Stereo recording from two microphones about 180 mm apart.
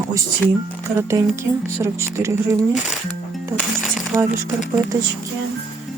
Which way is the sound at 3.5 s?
Centre (ahead or behind).